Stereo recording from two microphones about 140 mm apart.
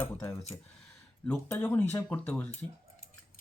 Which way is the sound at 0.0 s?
15° left (ahead or behind).